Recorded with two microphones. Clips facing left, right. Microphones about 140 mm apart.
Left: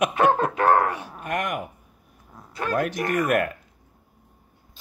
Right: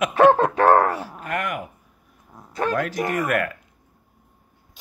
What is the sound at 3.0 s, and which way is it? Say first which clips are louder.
Speech: even; 20° right (ahead or behind).